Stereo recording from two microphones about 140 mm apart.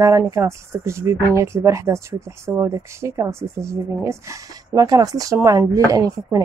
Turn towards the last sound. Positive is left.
turn(degrees=-25)  # may be behind; listen again after turning